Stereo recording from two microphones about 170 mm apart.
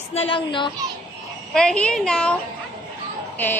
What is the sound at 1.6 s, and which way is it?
A woman's voice, 5° left (ahead or behind).